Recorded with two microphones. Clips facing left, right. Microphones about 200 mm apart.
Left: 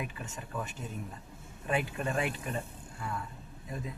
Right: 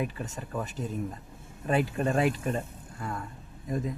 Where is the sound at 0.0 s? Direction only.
35° right (ahead or behind).